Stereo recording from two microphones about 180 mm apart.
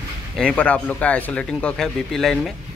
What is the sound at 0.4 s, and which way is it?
Speech, 5° left (ahead or behind).